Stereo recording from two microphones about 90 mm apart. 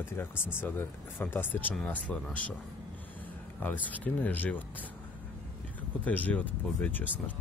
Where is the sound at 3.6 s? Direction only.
20° left (ahead or behind).